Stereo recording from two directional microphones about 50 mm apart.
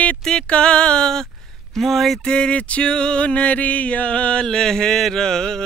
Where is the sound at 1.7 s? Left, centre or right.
Centre.